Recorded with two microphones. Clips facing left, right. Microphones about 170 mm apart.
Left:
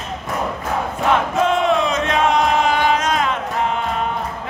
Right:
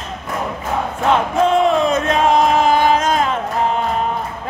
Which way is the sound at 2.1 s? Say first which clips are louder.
Right 2 dB; 35° right (ahead or behind).